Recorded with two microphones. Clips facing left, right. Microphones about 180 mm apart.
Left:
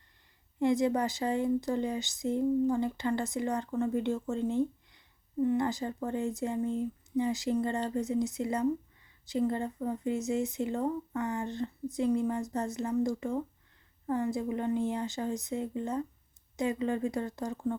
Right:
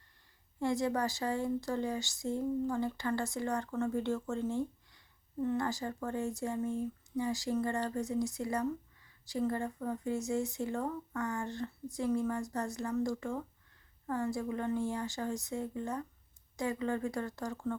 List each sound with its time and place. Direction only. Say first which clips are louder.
0.6 s speech: left 5 dB; 20° left (ahead or behind)